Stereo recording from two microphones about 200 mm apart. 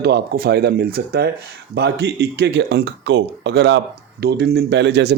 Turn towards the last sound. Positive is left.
turn(degrees=-55)  # may be behind; listen again after turning